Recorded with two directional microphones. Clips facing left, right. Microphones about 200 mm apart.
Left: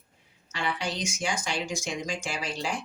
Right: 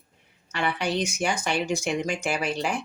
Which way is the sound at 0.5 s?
60° right (ahead or behind).